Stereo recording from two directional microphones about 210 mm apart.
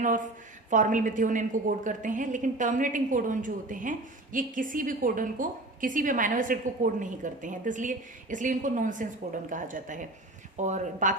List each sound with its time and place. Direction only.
0.7 s a woman's voice: 40° right (ahead or behind)